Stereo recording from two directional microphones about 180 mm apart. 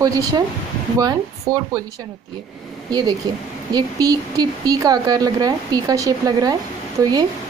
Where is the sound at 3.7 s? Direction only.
20° right (ahead or behind).